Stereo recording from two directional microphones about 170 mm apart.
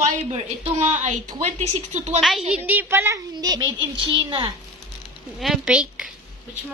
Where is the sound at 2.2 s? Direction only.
Centre (ahead or behind); by 4.5 s 30° right (ahead or behind).